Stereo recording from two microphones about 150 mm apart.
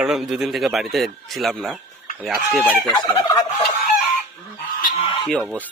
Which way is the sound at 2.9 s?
25° left (ahead or behind).